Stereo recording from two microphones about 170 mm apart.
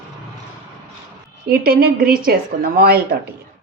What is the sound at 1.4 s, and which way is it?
Speech, 60° right (ahead or behind).